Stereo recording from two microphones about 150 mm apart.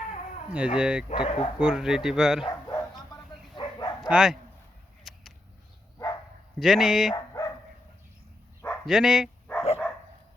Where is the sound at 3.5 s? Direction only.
30° left (ahead or behind).